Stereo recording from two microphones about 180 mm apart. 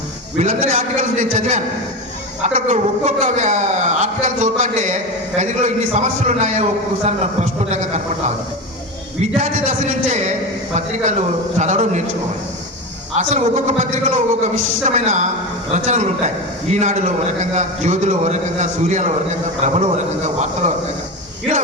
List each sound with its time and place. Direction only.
0.3 s a man's voice: 45° right (ahead or behind)
9.2 s a man's voice: 40° right (ahead or behind)
11.6 s a man's voice: 40° right (ahead or behind)
13.1 s a man's voice: 40° right (ahead or behind)